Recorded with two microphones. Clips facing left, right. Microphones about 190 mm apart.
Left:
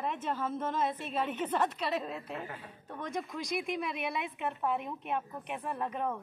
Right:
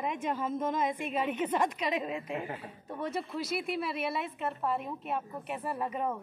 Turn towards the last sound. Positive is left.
turn(degrees=-5)  # may be behind; listen again after turning